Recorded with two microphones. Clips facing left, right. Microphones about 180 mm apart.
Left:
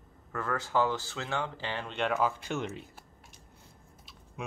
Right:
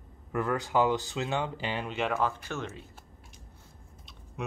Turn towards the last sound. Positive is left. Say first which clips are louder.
# right 3 dB
turn(degrees=0)  # may be behind; listen again after turning